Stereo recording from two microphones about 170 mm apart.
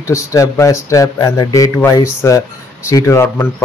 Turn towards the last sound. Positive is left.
turn(degrees=15)  # may be behind; listen again after turning